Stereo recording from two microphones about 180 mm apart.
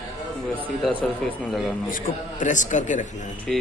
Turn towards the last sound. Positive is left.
turn(degrees=0)  # may be behind; listen again after turning